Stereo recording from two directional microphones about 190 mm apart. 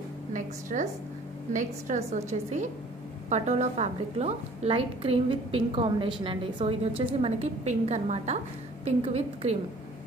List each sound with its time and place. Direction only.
0.3 s a woman's voice: 40° right (ahead or behind)
3.3 s a woman's voice: 40° right (ahead or behind)